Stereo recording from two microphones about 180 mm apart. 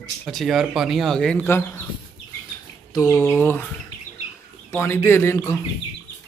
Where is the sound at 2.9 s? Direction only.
15° left (ahead or behind).